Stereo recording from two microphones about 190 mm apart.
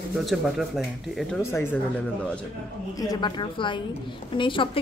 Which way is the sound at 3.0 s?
20° left (ahead or behind).